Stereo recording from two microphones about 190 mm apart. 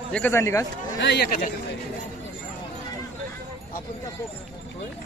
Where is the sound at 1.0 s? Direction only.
60° left (ahead or behind).